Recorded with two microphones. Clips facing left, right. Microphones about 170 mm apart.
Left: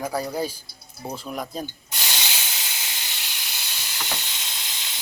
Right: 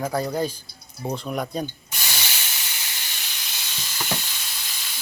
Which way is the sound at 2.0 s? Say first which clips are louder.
Left 1 dB; 20° left (ahead or behind).